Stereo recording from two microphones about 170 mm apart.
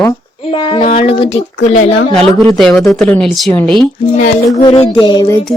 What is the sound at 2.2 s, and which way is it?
Speech, 30° right (ahead or behind).